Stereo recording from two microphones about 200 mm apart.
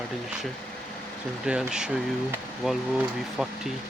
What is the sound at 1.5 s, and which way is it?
Speech, 5° right (ahead or behind).